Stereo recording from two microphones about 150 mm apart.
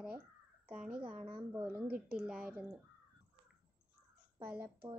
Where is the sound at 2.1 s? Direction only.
5° right (ahead or behind).